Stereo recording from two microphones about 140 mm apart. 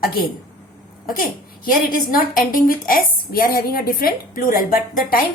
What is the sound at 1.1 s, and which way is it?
A woman's voice, 90° left.